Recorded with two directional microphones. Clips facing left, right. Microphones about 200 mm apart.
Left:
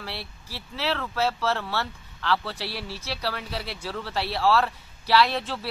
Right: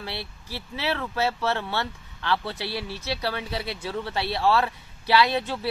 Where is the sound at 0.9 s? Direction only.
20° right (ahead or behind).